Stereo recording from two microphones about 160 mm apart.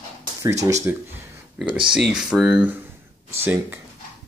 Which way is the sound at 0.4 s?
20° right (ahead or behind).